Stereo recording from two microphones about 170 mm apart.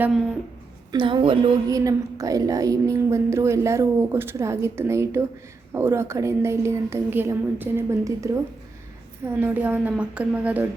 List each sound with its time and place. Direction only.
0.9 s a woman's voice: 30° right (ahead or behind); by 10.7 s 10° right (ahead or behind)